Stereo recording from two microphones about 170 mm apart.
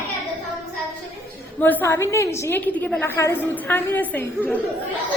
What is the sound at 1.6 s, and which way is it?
A woman's voice, 10° left (ahead or behind).